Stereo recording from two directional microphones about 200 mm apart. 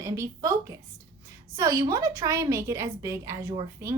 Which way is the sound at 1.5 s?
15° right (ahead or behind).